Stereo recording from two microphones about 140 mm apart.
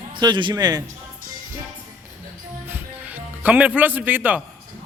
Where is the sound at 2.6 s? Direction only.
15° right (ahead or behind).